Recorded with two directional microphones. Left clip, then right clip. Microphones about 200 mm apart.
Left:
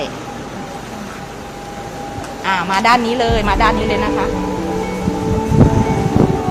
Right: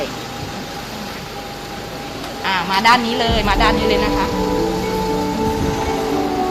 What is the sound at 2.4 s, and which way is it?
Speech, 45° left (ahead or behind).